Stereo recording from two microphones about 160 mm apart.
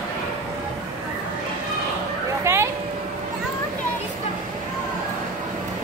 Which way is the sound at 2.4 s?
15° right (ahead or behind).